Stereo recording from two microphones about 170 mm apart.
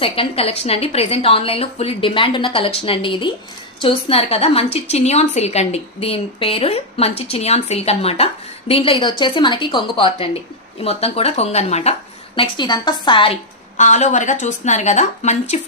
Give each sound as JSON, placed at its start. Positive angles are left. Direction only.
{"t": 0.0, "sound": "a woman's voice", "side_deg": 35}
{"t": 12.4, "sound": "a woman's voice", "side_deg": 25}
{"t": 13.7, "sound": "speech", "side_deg": 45}